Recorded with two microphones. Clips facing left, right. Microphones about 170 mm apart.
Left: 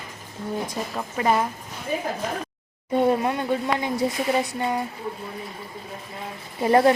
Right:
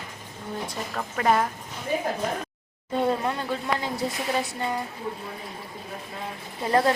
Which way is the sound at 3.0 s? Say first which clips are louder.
Left 4 dB; 15° left (ahead or behind).